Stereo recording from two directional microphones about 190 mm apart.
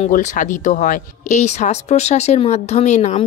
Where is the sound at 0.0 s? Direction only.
40° left (ahead or behind).